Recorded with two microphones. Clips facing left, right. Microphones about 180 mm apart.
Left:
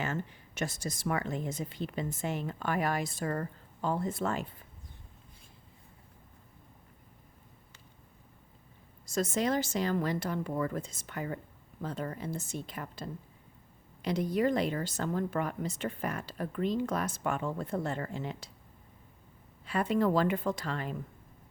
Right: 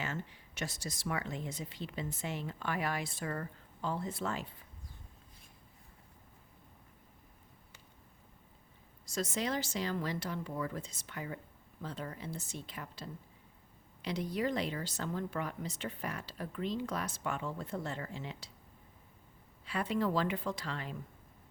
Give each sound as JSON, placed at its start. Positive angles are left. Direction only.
{"t": 0.0, "sound": "speech", "side_deg": 50}
{"t": 9.0, "sound": "speech", "side_deg": 50}
{"t": 19.6, "sound": "speech", "side_deg": 50}